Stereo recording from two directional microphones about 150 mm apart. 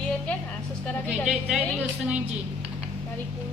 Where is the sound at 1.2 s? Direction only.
5° right (ahead or behind).